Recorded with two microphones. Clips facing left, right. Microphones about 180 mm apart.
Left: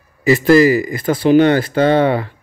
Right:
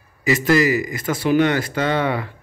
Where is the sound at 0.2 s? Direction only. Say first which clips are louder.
Left 7 dB; 35° left (ahead or behind).